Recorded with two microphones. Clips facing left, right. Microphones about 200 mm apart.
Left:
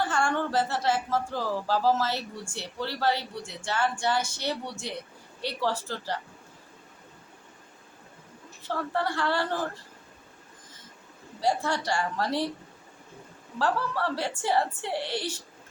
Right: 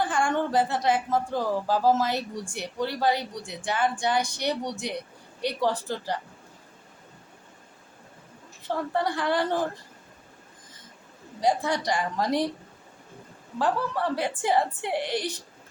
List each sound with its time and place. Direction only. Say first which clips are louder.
0.0 s a woman's voice: right 2 dB; 15° right (ahead or behind)
8.6 s a woman's voice: right 2 dB; 15° right (ahead or behind)
11.3 s a woman's voice: right 2 dB; 15° right (ahead or behind)
13.6 s a woman's voice: right 2 dB; 15° right (ahead or behind)